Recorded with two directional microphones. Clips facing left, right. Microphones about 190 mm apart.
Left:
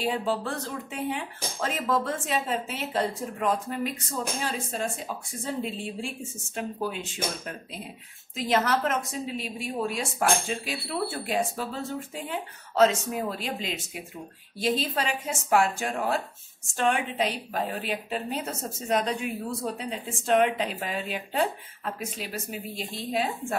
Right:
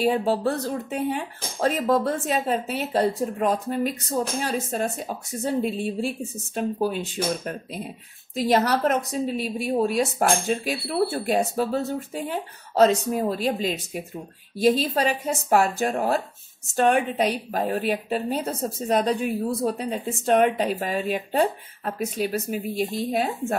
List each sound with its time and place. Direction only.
0.0 s speech: 40° right (ahead or behind)